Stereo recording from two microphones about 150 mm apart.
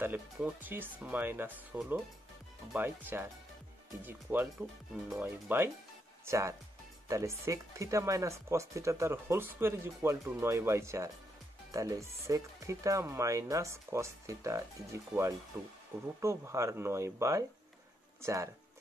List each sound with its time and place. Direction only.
0.0 s speech: 10° right (ahead or behind)